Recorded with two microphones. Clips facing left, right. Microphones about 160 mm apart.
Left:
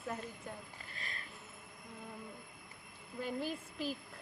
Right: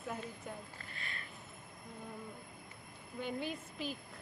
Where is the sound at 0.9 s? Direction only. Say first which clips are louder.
Even; 35° left (ahead or behind).